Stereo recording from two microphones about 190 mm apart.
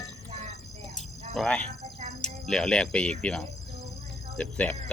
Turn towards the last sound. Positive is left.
turn(degrees=5)  # may be behind; listen again after turning